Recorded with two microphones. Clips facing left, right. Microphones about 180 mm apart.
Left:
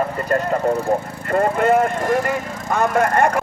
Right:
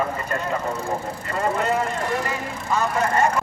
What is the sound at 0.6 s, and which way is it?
Speech, 65° left (ahead or behind).